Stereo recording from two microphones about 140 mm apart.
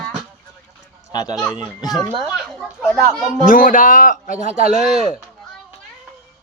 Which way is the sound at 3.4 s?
75° left (ahead or behind).